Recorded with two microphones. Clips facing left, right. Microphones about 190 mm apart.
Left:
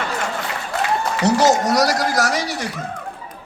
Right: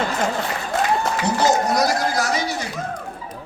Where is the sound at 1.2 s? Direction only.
85° left.